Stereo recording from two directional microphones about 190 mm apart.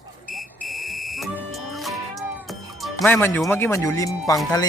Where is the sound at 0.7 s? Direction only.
Centre (ahead or behind).